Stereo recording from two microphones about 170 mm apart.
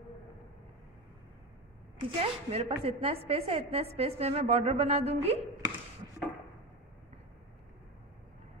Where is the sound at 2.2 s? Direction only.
35° right (ahead or behind).